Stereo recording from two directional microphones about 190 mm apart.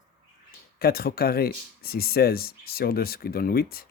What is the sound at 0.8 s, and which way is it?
Speech, 55° left (ahead or behind).